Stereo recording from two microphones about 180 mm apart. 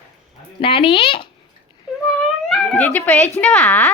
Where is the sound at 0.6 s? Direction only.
30° left (ahead or behind).